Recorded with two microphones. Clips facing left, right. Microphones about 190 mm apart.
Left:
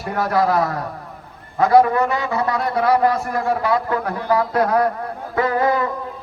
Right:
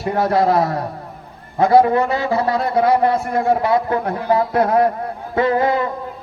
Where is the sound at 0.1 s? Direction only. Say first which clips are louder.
Right 3 dB; 25° right (ahead or behind).